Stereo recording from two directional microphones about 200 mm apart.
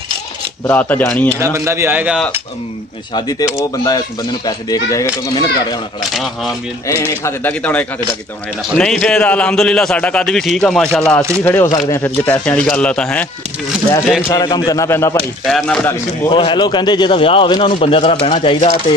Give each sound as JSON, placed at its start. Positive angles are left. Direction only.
{"t": 0.7, "sound": "speech", "side_deg": 10}
{"t": 1.4, "sound": "a man's voice", "side_deg": -15}
{"t": 3.2, "sound": "speech", "side_deg": 20}
{"t": 6.1, "sound": "a man's voice", "side_deg": 0}
{"t": 6.9, "sound": "a man's voice", "side_deg": 15}
{"t": 11.4, "sound": "a man's voice", "side_deg": 15}
{"t": 14.3, "sound": "speech", "side_deg": 20}
{"t": 15.4, "sound": "a man's voice", "side_deg": 5}
{"t": 16.3, "sound": "speech", "side_deg": 25}